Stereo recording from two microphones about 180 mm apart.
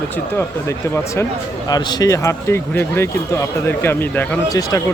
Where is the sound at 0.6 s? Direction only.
15° left (ahead or behind).